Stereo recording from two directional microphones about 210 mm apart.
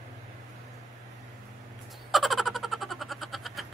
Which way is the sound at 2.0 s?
Centre (ahead or behind).